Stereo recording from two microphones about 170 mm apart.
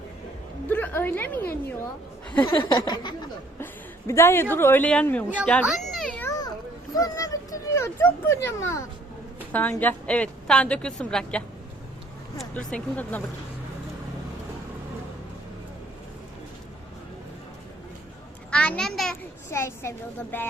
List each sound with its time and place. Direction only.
0.7 s a woman's voice: 10° left (ahead or behind)
2.4 s a sound: 25° left (ahead or behind)
3.6 s speech: 15° left (ahead or behind)
5.6 s children playing: centre (ahead or behind)
6.9 s a child's voice: 20° left (ahead or behind)
18.5 s a sound: 5° left (ahead or behind)
19.5 s a woman's voice: 15° left (ahead or behind)